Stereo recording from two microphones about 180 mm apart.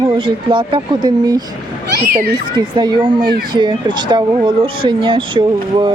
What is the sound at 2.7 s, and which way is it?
Speech, 25° right (ahead or behind).